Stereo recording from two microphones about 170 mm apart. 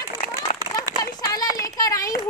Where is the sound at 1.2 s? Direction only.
20° left (ahead or behind).